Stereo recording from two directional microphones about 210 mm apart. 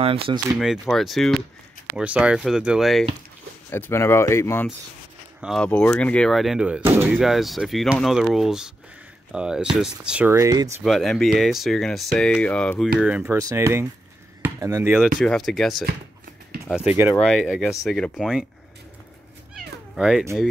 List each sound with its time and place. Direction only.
0.0 s speech: 25° right (ahead or behind)
0.6 s speech: centre (ahead or behind)
3.7 s speech: 10° left (ahead or behind)
5.4 s speech: centre (ahead or behind); by 10.7 s 15° right (ahead or behind)
10.8 s speech: centre (ahead or behind)
15.1 s speech: centre (ahead or behind)
19.5 s cat: centre (ahead or behind)